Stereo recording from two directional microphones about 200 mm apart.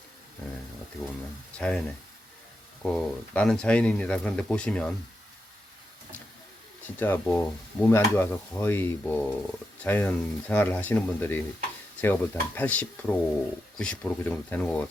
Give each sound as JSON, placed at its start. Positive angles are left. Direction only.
{"t": 1.5, "sound": "speech", "side_deg": 5}
{"t": 2.8, "sound": "speech", "side_deg": 5}
{"t": 6.8, "sound": "speech", "side_deg": 10}